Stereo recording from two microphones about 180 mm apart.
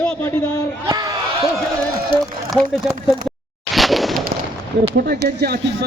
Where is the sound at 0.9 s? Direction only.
20° right (ahead or behind).